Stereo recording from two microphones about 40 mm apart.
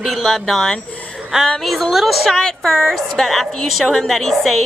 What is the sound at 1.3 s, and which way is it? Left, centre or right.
Speech, centre.